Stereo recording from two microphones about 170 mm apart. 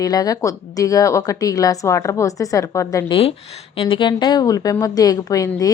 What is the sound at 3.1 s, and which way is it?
A woman's voice, 35° left (ahead or behind).